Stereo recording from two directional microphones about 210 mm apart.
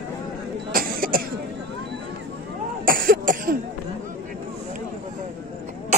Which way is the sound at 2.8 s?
45° right (ahead or behind).